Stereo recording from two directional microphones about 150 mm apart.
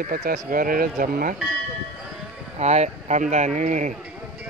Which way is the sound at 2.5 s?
45° right (ahead or behind).